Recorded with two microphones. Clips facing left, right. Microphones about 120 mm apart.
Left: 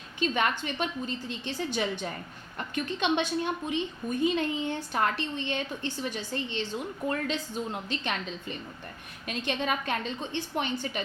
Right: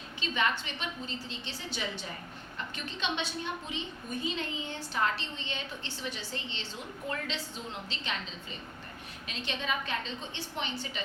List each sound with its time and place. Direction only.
0.2 s a woman's voice: 50° left (ahead or behind)